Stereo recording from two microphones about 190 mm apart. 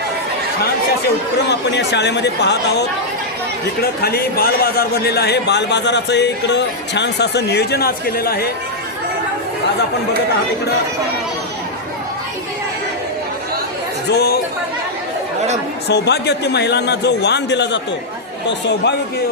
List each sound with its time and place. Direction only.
1.5 s a man's voice: 65° left (ahead or behind)
4.0 s a man's voice: 55° left (ahead or behind)
14.1 s a man's voice: 55° left (ahead or behind)
15.9 s a man's voice: 60° left (ahead or behind)